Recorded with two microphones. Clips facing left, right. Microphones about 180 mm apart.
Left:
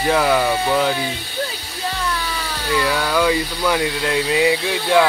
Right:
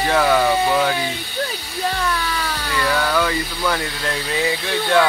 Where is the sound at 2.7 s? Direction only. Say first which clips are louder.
Left 1 dB; 10° left (ahead or behind).